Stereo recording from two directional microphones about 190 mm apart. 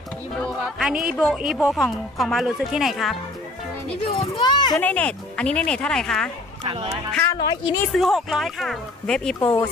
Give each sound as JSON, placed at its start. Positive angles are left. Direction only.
{"t": 0.3, "sound": "speech", "side_deg": 0}
{"t": 4.4, "sound": "a child's voice", "side_deg": 20}
{"t": 4.7, "sound": "speech", "side_deg": 10}
{"t": 6.6, "sound": "speech", "side_deg": -25}
{"t": 7.2, "sound": "a woman's voice", "side_deg": 20}
{"t": 7.9, "sound": "speech", "side_deg": 0}